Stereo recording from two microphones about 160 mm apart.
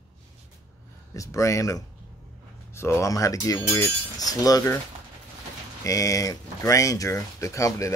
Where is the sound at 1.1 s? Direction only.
20° left (ahead or behind).